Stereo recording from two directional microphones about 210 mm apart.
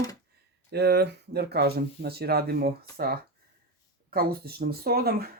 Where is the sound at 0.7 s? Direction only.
50° right (ahead or behind).